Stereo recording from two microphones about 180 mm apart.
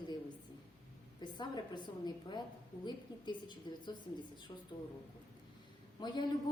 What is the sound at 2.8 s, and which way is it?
A woman's voice, 25° left (ahead or behind).